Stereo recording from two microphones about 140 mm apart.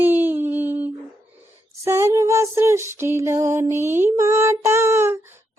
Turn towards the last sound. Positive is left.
turn(degrees=-20)  # may be behind; listen again after turning